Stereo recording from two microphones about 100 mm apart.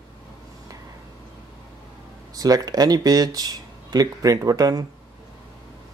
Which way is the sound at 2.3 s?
40° right (ahead or behind).